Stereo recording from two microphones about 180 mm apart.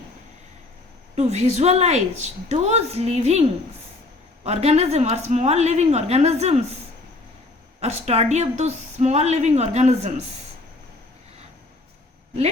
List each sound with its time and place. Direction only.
1.1 s a woman's voice: 35° right (ahead or behind)
4.4 s a woman's voice: 35° right (ahead or behind)
7.8 s a woman's voice: 35° right (ahead or behind)